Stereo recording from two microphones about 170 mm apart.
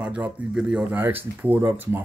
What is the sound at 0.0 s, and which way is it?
Speech, 5° right (ahead or behind).